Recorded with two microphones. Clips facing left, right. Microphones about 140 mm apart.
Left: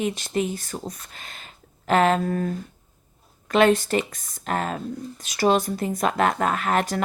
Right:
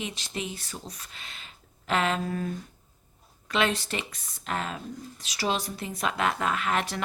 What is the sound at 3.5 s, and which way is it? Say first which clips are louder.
Speech: left 9 dB; 50° left (ahead or behind).